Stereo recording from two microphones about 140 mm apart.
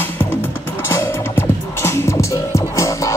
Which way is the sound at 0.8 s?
20° left (ahead or behind).